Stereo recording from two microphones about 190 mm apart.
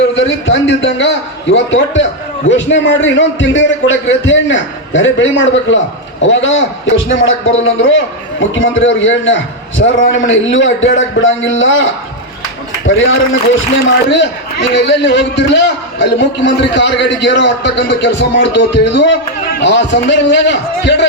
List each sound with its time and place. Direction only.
0.2 s a man's voice: 80° left
14.1 s a man's voice: 70° left (ahead or behind)